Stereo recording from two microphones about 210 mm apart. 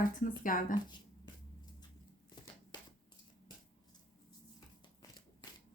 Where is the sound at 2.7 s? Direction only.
20° left (ahead or behind).